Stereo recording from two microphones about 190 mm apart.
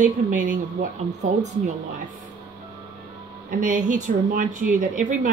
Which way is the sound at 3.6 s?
40° right (ahead or behind).